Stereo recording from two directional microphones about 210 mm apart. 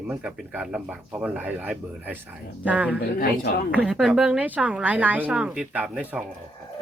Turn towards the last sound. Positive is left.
turn(degrees=-5)  # may be behind; listen again after turning